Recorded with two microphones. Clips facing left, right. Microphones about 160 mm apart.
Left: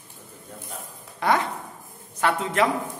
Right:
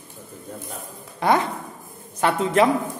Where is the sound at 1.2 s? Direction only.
20° right (ahead or behind).